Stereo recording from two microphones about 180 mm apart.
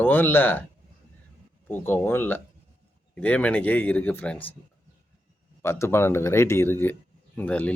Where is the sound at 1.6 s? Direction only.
10° left (ahead or behind).